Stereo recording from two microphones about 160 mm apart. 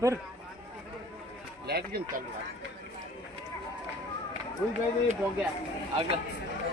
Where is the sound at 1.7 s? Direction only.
90° right.